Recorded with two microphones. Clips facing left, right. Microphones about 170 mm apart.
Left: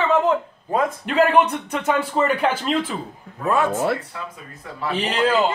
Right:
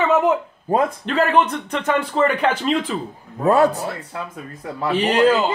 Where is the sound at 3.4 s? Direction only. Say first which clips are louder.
Right 5 dB; 35° right (ahead or behind).